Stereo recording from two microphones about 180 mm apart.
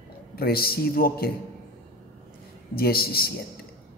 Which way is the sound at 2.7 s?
55° left (ahead or behind).